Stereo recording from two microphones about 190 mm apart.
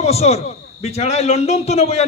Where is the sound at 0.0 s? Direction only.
35° left (ahead or behind).